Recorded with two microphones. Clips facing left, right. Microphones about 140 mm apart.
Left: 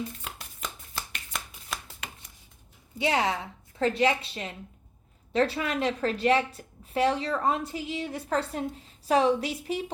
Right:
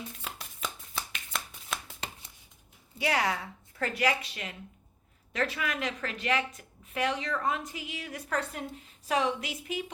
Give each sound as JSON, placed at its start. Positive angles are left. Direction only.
{"t": 0.3, "sound": "shuffling cards", "side_deg": 0}
{"t": 3.0, "sound": "a woman's voice", "side_deg": 25}